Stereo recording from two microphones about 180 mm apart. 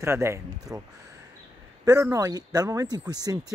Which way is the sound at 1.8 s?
15° right (ahead or behind).